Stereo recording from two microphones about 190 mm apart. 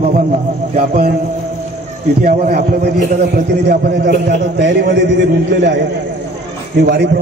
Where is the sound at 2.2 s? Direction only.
50° right (ahead or behind); by 5.7 s 65° right (ahead or behind).